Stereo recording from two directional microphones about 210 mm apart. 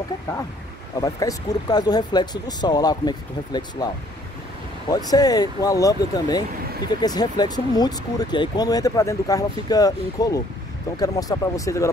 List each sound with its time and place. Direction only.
1.0 s speech: 15° left (ahead or behind)